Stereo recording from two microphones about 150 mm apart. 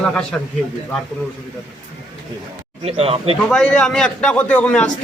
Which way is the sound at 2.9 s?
40° right (ahead or behind).